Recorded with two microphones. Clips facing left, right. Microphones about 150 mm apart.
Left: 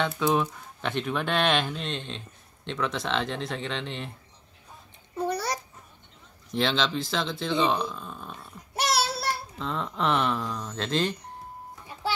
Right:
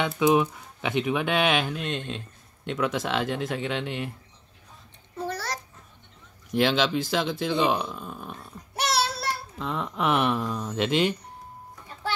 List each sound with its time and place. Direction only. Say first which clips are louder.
0.0 s speech: right 3 dB; 10° right (ahead or behind)
5.1 s babbling: left 3 dB; 15° left (ahead or behind)
6.5 s speech: right 3 dB; 5° right (ahead or behind)
8.7 s a child's voice: even; centre (ahead or behind)